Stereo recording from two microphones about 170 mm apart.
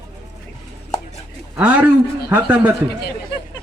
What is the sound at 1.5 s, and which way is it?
A man's voice, 10° right (ahead or behind).